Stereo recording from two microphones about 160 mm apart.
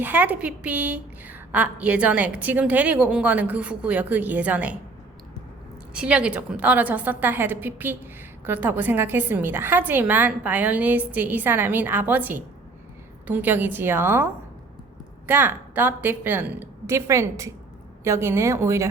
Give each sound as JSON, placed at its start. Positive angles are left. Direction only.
{"t": 0.0, "sound": "a woman's voice", "side_deg": -10}
{"t": 5.9, "sound": "a woman's voice", "side_deg": -5}
{"t": 15.3, "sound": "a woman's voice", "side_deg": -10}